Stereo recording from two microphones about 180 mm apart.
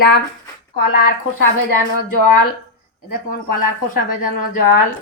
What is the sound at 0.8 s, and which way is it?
Speech, 55° left (ahead or behind).